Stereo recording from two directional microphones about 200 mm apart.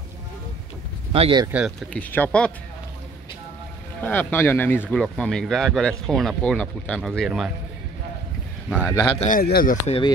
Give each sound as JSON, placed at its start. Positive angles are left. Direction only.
{"t": 1.1, "sound": "speech", "side_deg": -25}
{"t": 1.5, "sound": "speech", "side_deg": -5}
{"t": 4.0, "sound": "speech", "side_deg": 10}
{"t": 8.6, "sound": "speech", "side_deg": 5}
{"t": 9.2, "sound": "speech", "side_deg": 45}
{"t": 9.8, "sound": "speech", "side_deg": 25}